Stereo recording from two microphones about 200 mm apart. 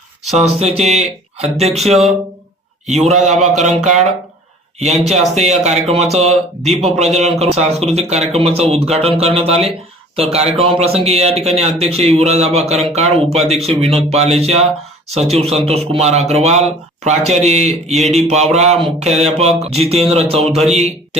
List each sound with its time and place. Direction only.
0.3 s speech: 35° right (ahead or behind)
2.8 s speech: 35° right (ahead or behind)
5.3 s speech: 35° right (ahead or behind)
20.5 s a man's voice: centre (ahead or behind)